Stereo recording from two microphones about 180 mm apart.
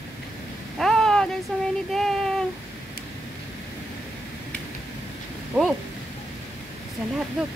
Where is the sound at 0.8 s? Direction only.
Centre (ahead or behind).